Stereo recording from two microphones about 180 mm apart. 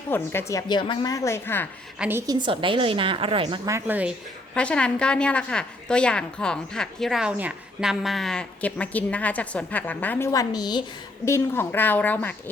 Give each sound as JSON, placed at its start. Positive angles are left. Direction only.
{"t": 0.1, "sound": "a woman's voice", "side_deg": 15}
{"t": 2.0, "sound": "a woman's voice", "side_deg": -15}
{"t": 3.7, "sound": "speech", "side_deg": -10}
{"t": 4.5, "sound": "a woman's voice", "side_deg": 5}